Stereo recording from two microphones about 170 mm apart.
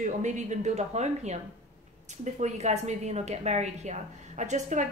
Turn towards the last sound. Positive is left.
turn(degrees=-45)  # may be behind; listen again after turning